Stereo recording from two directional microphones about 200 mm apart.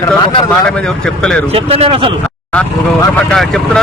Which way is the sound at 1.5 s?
25° right (ahead or behind).